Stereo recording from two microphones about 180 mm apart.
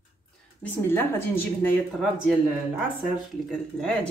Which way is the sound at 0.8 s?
10° left (ahead or behind).